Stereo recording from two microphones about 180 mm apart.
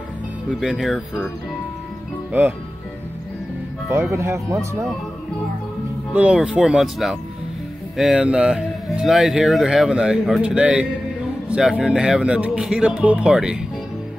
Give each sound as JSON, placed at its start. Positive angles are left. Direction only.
{"t": 0.6, "sound": "speech", "side_deg": 0}
{"t": 3.9, "sound": "speech", "side_deg": -15}
{"t": 6.1, "sound": "speech", "side_deg": -5}